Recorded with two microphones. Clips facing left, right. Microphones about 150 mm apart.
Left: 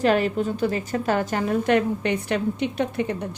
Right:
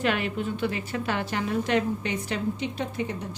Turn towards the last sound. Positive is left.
turn(degrees=60)  # may be behind; listen again after turning